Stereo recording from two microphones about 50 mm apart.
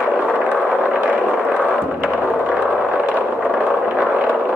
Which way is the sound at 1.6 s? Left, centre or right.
Right.